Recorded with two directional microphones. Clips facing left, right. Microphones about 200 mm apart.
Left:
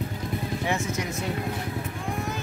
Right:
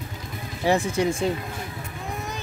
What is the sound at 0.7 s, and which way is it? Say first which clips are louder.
Speech: right 10 dB; 30° right (ahead or behind).